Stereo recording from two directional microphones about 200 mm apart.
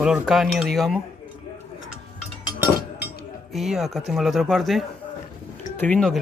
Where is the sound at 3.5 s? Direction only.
Centre (ahead or behind).